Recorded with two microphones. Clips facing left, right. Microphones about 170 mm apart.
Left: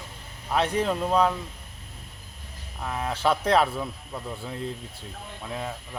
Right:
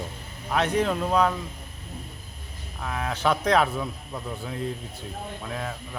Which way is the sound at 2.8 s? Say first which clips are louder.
Even; 5° left (ahead or behind).